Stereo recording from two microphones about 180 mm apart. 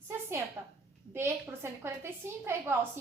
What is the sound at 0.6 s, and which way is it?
Speech, 15° right (ahead or behind).